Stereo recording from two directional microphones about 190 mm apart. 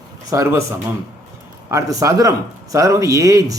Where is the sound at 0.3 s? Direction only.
15° right (ahead or behind).